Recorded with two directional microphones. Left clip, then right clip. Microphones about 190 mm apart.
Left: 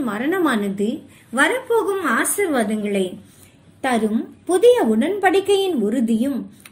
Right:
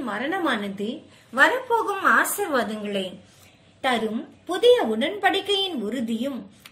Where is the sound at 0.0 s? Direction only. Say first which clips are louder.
Left 5 dB; 20° left (ahead or behind).